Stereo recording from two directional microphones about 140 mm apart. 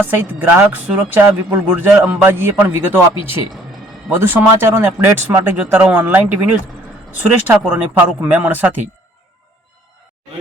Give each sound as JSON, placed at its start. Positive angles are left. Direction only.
{"t": 0.0, "sound": "speech", "side_deg": -10}